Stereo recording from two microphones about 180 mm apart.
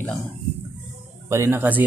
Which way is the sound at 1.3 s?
15° right (ahead or behind).